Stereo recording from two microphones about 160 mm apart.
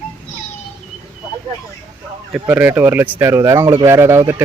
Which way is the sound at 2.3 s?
10° right (ahead or behind).